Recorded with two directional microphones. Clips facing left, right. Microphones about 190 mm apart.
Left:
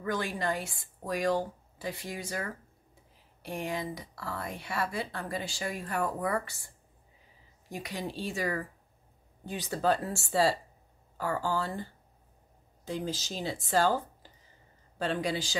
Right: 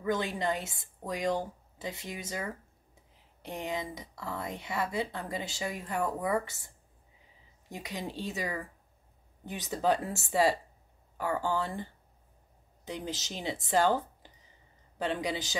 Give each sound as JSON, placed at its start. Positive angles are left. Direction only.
{"t": 0.0, "sound": "speech", "side_deg": -20}
{"t": 7.7, "sound": "speech", "side_deg": -20}